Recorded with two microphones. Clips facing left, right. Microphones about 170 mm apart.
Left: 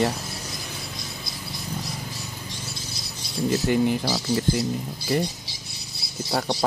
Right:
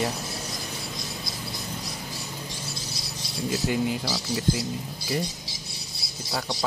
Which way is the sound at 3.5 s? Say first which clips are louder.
Left 5 dB; 50° left (ahead or behind).